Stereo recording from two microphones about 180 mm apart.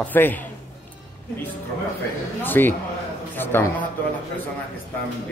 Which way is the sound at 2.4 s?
10° left (ahead or behind).